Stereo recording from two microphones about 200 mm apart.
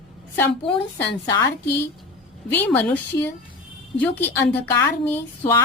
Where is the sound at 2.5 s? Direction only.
10° left (ahead or behind).